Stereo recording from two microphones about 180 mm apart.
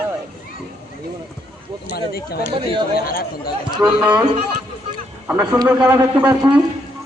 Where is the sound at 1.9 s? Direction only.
60° left (ahead or behind).